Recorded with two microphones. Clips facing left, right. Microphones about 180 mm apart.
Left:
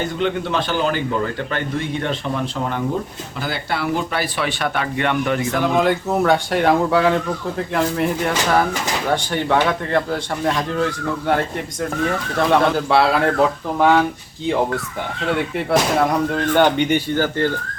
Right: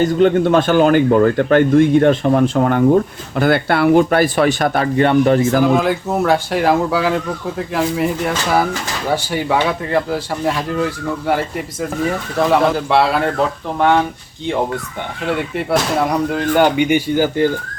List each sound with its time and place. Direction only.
0.0 s speech: 45° right (ahead or behind)
5.6 s speech: centre (ahead or behind)
15.3 s speech: centre (ahead or behind)